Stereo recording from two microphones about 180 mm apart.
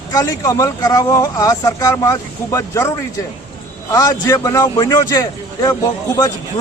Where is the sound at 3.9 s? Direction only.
20° left (ahead or behind).